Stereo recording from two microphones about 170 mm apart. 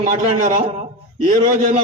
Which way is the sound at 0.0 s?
50° right (ahead or behind).